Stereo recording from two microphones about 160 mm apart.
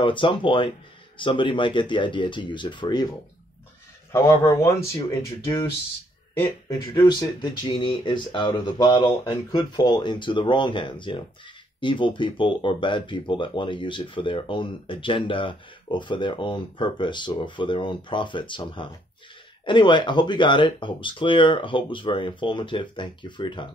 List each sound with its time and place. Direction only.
0.0 s speech: 30° left (ahead or behind)
4.1 s speech: 20° left (ahead or behind)
7.0 s speech: 30° left (ahead or behind)